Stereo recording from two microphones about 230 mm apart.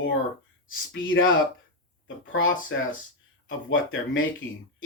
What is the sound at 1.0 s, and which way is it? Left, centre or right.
Speech, left.